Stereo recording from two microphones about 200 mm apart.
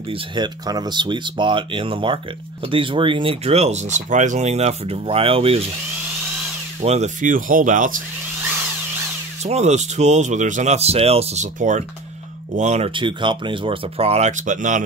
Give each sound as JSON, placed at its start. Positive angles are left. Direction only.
{"t": 0.1, "sound": "speech", "side_deg": -20}
{"t": 6.8, "sound": "speech", "side_deg": -35}
{"t": 9.4, "sound": "speech", "side_deg": -35}